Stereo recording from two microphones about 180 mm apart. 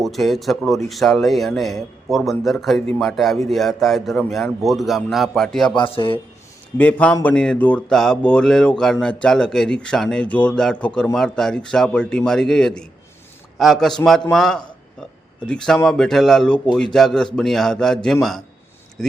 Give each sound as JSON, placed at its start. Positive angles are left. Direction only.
{"t": 0.0, "sound": "speech", "side_deg": 0}
{"t": 5.7, "sound": "a man's voice", "side_deg": 30}
{"t": 6.7, "sound": "a man's voice", "side_deg": 10}